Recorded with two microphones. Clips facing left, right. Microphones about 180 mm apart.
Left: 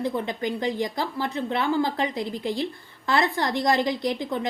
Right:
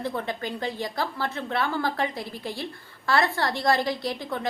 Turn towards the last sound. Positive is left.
turn(degrees=20)  # may be behind; listen again after turning